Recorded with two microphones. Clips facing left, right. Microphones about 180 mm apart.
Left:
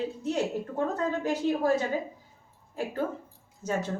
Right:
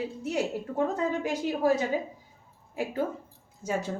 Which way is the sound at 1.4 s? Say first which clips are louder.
Left 6 dB; 15° right (ahead or behind).